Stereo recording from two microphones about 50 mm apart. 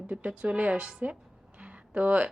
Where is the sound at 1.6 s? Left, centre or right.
Right.